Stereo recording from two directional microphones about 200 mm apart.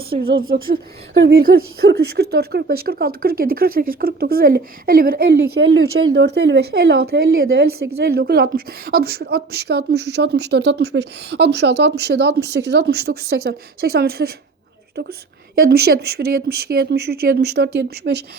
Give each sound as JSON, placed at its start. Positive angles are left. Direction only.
{"t": 0.1, "sound": "speech", "side_deg": -50}
{"t": 5.3, "sound": "speech", "side_deg": -75}
{"t": 6.0, "sound": "a woman's voice", "side_deg": -55}
{"t": 7.4, "sound": "a woman's voice", "side_deg": -75}
{"t": 15.5, "sound": "speech", "side_deg": -50}